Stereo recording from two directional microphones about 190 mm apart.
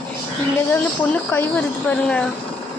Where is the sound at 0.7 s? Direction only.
10° left (ahead or behind).